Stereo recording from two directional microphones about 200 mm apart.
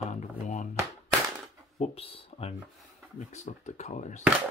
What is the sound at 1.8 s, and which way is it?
Speech, 30° left (ahead or behind).